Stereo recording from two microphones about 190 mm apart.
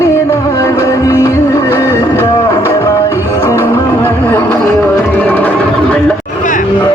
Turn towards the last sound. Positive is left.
turn(degrees=10)  # may be behind; listen again after turning